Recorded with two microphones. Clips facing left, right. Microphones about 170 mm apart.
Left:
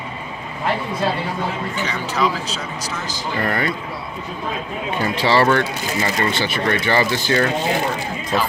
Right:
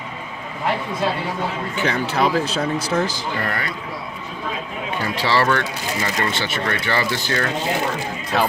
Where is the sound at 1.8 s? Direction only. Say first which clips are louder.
Right 3 dB; 55° right (ahead or behind).